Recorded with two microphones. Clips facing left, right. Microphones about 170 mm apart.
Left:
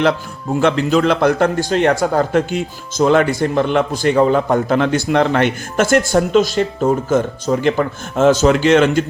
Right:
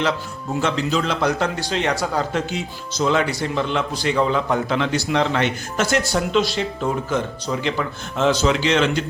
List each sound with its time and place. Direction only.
0.6 s a man's voice: 55° left (ahead or behind)